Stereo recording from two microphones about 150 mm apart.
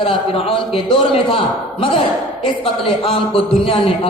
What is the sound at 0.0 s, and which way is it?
A man's voice, 35° left (ahead or behind).